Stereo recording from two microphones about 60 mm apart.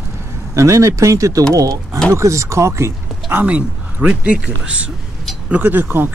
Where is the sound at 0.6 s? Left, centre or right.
Right.